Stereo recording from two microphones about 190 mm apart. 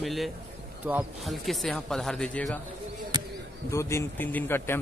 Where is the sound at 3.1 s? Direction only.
20° right (ahead or behind).